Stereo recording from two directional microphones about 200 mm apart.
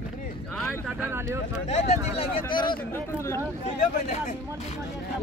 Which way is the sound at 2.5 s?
25° left (ahead or behind).